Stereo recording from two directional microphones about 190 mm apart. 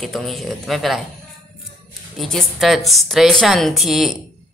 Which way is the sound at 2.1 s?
Centre (ahead or behind).